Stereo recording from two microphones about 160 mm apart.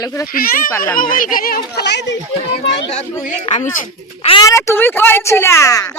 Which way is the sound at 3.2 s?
50° left (ahead or behind).